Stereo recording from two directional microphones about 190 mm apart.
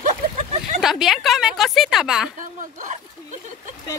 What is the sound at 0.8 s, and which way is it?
Speech, centre (ahead or behind).